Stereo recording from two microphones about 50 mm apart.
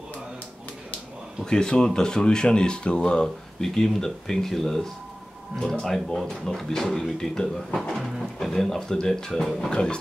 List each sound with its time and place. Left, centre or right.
1.4 s speech: centre